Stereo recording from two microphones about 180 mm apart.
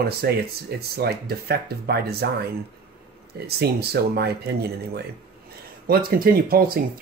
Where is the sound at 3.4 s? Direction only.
65° right (ahead or behind).